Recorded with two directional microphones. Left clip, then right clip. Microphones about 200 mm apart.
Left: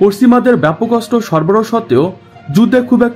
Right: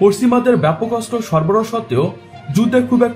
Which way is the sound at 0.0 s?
50° left (ahead or behind).